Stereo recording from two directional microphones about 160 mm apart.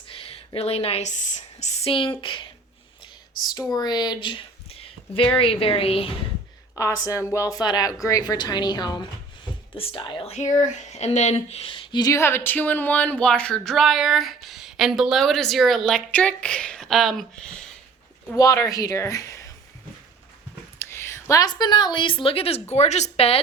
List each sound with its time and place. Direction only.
0.1 s a woman's voice: 35° left (ahead or behind)
6.7 s speech: 20° left (ahead or behind); by 17.6 s 5° left (ahead or behind)
18.3 s speech: 20° left (ahead or behind)
20.7 s a woman's voice: 15° left (ahead or behind); by 23.4 s 40° left (ahead or behind)